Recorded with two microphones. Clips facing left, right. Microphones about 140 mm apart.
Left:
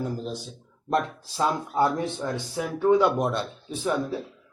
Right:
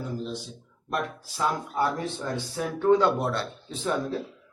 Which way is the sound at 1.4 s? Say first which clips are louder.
Left 3 dB; 15° left (ahead or behind).